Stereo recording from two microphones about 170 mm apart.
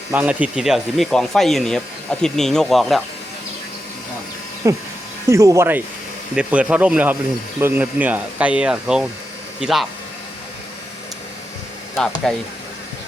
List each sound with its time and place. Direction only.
0.1 s speech: 10° right (ahead or behind)
4.6 s speech: 15° right (ahead or behind); by 9.8 s centre (ahead or behind)
11.9 s speech: centre (ahead or behind)